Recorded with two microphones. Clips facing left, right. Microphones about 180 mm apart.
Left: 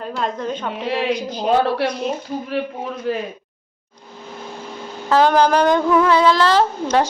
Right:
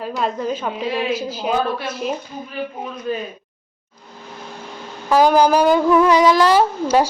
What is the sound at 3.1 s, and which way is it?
Speech, 85° left.